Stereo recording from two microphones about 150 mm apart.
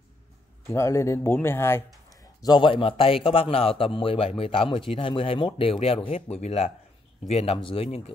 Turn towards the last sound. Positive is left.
turn(degrees=40)  # may be behind; listen again after turning